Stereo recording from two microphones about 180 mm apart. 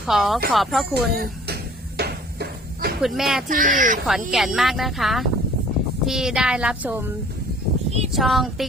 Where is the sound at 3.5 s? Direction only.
45° right (ahead or behind).